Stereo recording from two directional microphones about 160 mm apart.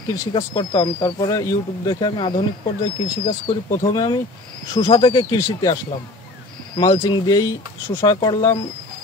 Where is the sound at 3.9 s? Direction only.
25° left (ahead or behind).